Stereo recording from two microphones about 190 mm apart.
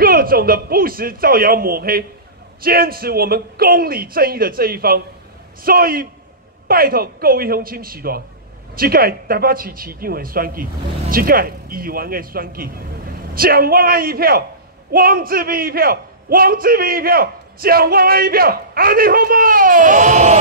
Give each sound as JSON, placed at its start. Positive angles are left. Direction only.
{"t": 0.0, "sound": "a man's voice", "side_deg": -50}